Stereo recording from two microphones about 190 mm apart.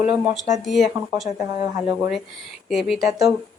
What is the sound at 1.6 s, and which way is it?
Speech, 15° right (ahead or behind).